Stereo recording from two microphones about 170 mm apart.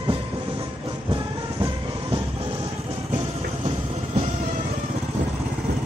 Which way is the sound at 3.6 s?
35° right (ahead or behind).